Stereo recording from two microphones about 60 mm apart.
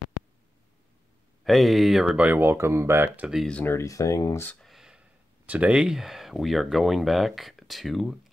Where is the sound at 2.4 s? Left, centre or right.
Right.